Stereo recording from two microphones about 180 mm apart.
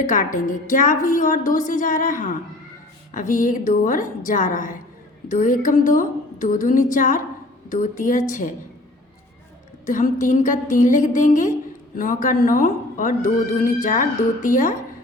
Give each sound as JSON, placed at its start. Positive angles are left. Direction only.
{"t": 0.1, "sound": "a woman's voice", "side_deg": 45}
{"t": 9.8, "sound": "a woman's voice", "side_deg": 45}